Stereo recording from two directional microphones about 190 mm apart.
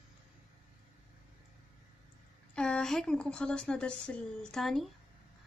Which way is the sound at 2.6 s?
5° left (ahead or behind).